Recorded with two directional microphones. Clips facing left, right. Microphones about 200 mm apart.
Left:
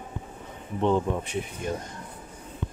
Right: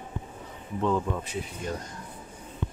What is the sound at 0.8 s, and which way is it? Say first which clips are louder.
Speech: left 3 dB; 25° left (ahead or behind).